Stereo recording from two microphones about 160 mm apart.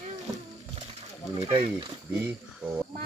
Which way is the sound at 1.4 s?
30° right (ahead or behind).